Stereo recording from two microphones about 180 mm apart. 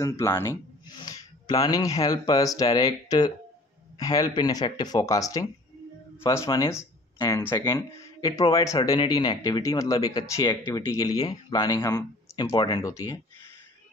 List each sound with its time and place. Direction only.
0.0 s speech: 15° left (ahead or behind)